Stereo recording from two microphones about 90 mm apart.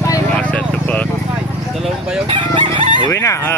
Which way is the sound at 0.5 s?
15° left (ahead or behind).